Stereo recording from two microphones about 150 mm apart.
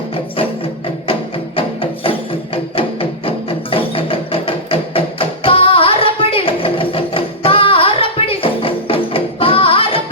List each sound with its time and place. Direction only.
1.5 s music: 35° left (ahead or behind)